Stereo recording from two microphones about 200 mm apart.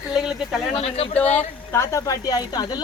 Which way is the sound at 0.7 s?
30° left (ahead or behind).